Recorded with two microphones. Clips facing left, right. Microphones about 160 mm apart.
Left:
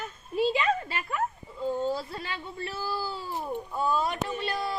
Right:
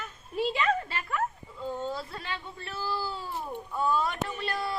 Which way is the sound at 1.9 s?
30° left (ahead or behind).